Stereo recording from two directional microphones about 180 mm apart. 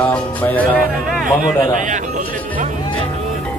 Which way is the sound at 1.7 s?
45° right (ahead or behind).